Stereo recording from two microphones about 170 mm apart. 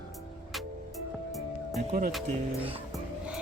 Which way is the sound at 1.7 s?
45° right (ahead or behind).